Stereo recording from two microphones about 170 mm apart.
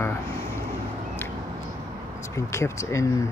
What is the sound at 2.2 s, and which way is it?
Speech, 15° left (ahead or behind).